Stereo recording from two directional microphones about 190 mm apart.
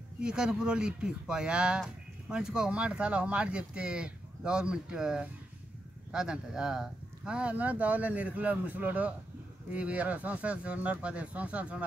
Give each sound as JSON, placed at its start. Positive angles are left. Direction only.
{"t": 0.2, "sound": "speech", "side_deg": -5}